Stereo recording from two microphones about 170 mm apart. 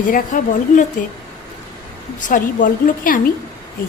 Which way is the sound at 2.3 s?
50° left (ahead or behind).